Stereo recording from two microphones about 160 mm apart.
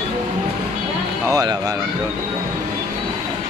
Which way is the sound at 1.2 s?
25° right (ahead or behind).